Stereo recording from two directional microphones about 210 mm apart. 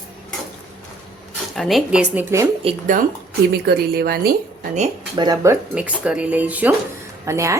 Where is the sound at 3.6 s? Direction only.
50° right (ahead or behind).